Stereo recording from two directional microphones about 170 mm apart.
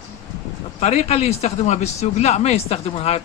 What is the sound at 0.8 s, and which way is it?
Speech, 40° left (ahead or behind).